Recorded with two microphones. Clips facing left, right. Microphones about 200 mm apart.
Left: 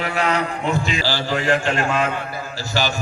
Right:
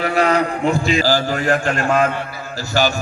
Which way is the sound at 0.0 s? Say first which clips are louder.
Right 5 dB; 40° right (ahead or behind).